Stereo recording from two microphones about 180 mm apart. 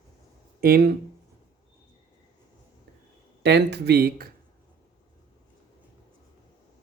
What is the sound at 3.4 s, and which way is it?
Speech, 65° right (ahead or behind).